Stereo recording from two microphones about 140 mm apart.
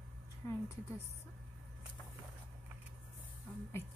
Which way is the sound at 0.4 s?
20° left (ahead or behind).